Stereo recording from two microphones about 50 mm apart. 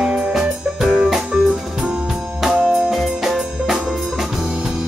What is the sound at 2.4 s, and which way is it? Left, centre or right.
Music, centre.